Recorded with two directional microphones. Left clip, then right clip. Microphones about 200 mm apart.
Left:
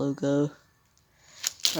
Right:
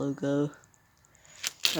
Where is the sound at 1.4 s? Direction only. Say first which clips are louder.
Left 1 dB; 10° left (ahead or behind).